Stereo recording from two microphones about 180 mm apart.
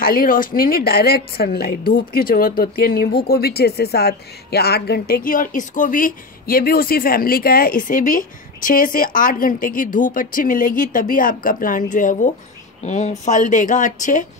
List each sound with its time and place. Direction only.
0.0 s a woman's voice: 55° left (ahead or behind)